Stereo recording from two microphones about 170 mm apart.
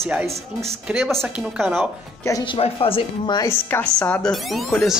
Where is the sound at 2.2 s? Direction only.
25° left (ahead or behind).